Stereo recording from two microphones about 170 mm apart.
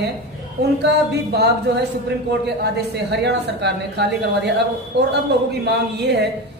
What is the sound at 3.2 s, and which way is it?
Speech, 80° right.